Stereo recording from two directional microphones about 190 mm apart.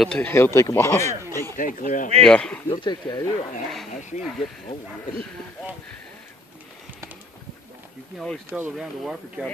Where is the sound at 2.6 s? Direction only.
25° left (ahead or behind).